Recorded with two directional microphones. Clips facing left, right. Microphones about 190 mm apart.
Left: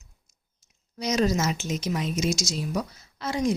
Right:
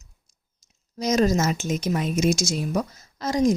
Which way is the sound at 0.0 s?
40° right (ahead or behind).